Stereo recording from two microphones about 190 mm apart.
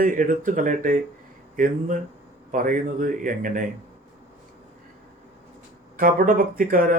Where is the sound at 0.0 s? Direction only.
45° right (ahead or behind).